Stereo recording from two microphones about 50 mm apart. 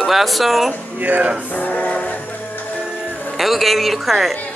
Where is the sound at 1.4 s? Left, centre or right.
Left.